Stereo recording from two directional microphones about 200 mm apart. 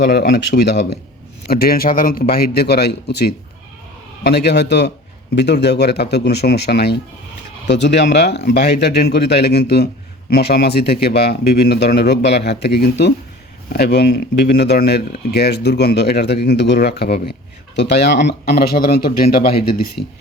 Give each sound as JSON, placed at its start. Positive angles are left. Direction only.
{"t": 0.0, "sound": "speech", "side_deg": 50}
{"t": 20.0, "sound": "speech", "side_deg": 25}